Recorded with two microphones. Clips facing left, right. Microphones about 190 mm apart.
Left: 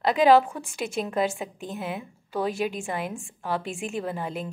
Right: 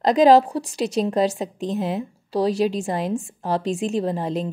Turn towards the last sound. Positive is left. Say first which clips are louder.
# right 7 dB
turn(degrees=-35)  # may be behind; listen again after turning